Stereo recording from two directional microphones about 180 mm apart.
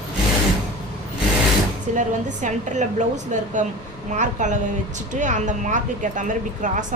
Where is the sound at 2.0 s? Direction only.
45° right (ahead or behind).